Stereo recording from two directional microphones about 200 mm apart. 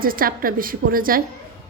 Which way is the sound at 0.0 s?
45° right (ahead or behind).